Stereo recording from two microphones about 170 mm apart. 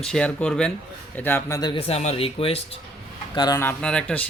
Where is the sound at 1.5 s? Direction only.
30° left (ahead or behind).